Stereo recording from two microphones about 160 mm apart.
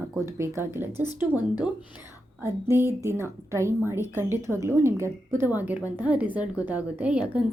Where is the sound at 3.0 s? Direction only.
15° right (ahead or behind).